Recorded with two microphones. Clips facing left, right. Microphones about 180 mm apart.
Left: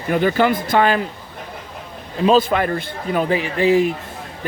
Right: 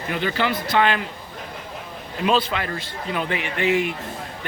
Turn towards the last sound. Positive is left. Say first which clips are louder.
# left 6 dB
turn(degrees=35)  # may be behind; listen again after turning